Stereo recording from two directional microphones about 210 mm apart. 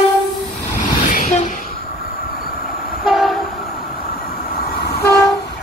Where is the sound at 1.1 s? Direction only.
35° left (ahead or behind).